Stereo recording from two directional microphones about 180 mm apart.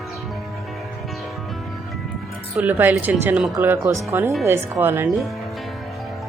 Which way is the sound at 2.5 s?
10° right (ahead or behind).